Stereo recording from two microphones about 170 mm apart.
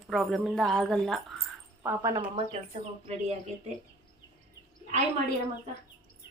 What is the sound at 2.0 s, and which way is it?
Speech, 25° right (ahead or behind).